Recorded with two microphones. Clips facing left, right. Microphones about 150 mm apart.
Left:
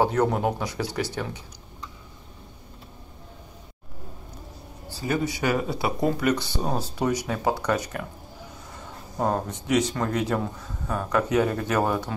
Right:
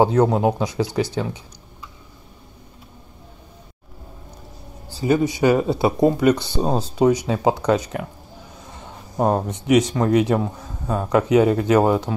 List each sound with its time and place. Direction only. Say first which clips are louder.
0.0 s speech: right 6 dB; 20° right (ahead or behind)
5.0 s speech: right 8 dB; 20° right (ahead or behind)
9.2 s speech: right 6 dB; 20° right (ahead or behind)